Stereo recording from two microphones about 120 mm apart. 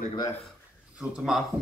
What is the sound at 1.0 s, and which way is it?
Speech, 5° right (ahead or behind).